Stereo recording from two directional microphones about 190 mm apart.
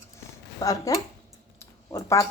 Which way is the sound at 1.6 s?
15° left (ahead or behind).